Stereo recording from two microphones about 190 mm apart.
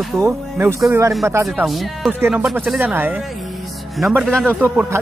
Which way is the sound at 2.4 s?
Centre (ahead or behind).